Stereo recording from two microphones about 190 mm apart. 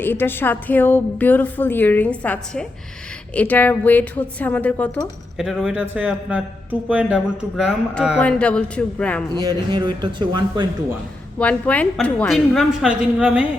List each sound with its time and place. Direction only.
0.0 s a man's voice: 10° left (ahead or behind)
9.4 s a man's voice: 20° right (ahead or behind)
11.3 s a man's voice: 5° left (ahead or behind)